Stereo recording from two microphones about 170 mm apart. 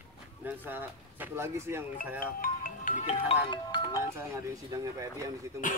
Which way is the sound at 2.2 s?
55° left (ahead or behind).